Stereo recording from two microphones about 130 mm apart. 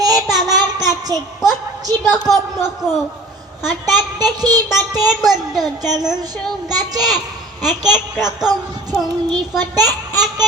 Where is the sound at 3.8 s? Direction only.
30° right (ahead or behind).